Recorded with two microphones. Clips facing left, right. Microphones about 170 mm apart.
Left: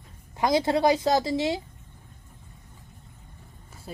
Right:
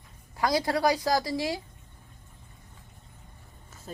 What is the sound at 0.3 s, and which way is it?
A woman's voice, 20° left (ahead or behind).